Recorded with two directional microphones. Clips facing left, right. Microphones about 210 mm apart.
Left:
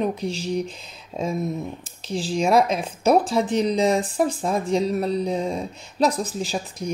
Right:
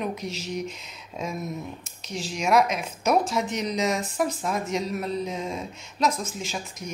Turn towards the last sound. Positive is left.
turn(degrees=35)  # may be behind; listen again after turning